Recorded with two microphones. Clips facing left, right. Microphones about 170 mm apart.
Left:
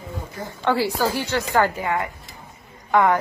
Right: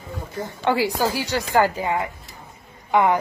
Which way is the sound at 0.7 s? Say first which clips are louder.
Even; 15° right (ahead or behind).